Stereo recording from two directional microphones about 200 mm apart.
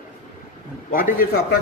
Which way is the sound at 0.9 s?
45° left (ahead or behind).